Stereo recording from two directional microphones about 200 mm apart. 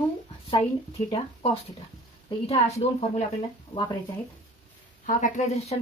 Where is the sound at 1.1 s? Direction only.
30° left (ahead or behind).